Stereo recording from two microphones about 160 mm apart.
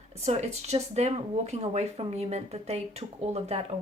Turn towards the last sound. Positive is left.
turn(degrees=-40)  # may be behind; listen again after turning